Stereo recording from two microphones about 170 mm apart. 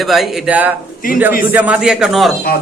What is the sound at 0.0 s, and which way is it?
A man's voice, centre (ahead or behind).